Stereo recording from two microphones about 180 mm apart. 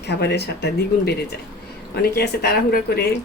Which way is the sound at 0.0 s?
70° left (ahead or behind).